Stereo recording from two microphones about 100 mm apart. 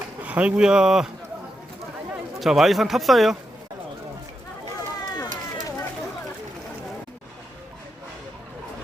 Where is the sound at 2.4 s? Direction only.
Centre (ahead or behind).